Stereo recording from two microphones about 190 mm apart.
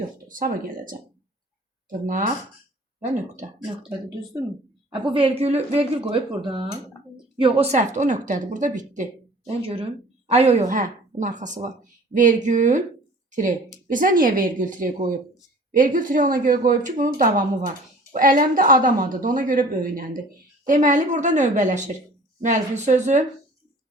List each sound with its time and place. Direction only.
0.3 s speech: 45° right (ahead or behind)
3.8 s a woman's voice: 20° right (ahead or behind); by 23.2 s 40° right (ahead or behind)